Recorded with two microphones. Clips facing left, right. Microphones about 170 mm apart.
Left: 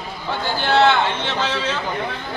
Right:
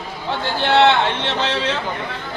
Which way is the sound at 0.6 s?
70° right (ahead or behind).